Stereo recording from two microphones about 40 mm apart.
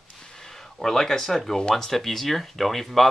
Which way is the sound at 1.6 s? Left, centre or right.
Left.